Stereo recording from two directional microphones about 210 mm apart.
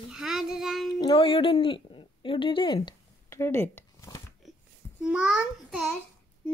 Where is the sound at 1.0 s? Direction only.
20° left (ahead or behind).